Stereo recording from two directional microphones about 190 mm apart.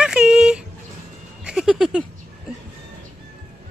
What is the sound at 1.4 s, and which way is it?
Music, 5° right (ahead or behind).